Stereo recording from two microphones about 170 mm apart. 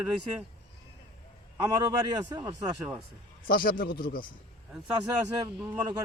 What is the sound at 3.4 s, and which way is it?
Speech, 55° left (ahead or behind).